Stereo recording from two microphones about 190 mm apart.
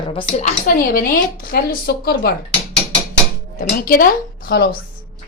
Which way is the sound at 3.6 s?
45° left (ahead or behind).